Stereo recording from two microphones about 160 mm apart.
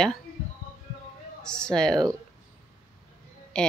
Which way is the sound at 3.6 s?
5° left (ahead or behind).